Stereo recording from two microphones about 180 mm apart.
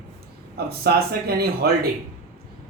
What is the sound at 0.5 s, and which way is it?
Speech, 60° right (ahead or behind).